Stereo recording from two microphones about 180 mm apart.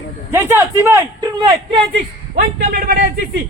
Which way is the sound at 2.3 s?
55° right (ahead or behind).